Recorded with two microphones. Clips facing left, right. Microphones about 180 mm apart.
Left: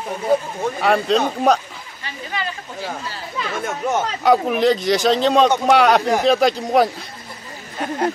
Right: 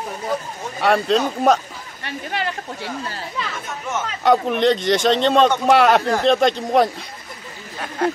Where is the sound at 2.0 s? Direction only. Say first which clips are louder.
Right 2 dB; 60° right (ahead or behind).